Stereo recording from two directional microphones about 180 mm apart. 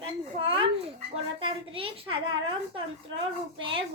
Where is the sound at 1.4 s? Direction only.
30° right (ahead or behind).